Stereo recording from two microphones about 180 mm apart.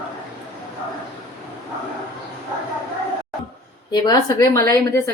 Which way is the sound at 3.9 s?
20° left (ahead or behind).